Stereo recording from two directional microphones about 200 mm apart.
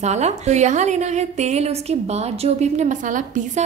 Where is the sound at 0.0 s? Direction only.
35° right (ahead or behind).